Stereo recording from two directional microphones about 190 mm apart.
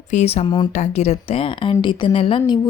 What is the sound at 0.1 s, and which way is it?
Speech, 35° left (ahead or behind).